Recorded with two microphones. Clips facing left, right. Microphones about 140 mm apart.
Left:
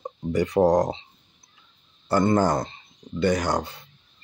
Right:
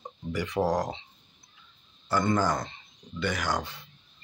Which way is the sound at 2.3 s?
35° left (ahead or behind).